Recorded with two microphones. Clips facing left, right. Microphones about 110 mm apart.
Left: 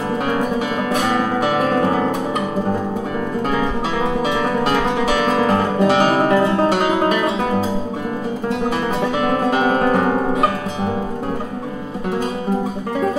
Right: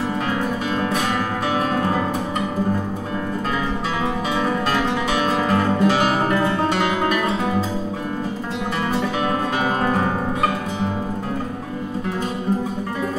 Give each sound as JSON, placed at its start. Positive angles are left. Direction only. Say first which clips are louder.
{"t": 5.5, "sound": "music", "louder": "left 2 dB", "side_deg": 30}
{"t": 9.5, "sound": "music", "louder": "left 5 dB", "side_deg": 30}